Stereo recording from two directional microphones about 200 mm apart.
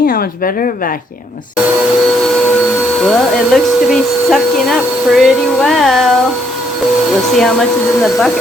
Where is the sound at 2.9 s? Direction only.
Centre (ahead or behind).